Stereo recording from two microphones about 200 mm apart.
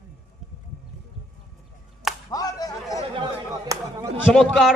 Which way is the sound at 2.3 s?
20° left (ahead or behind).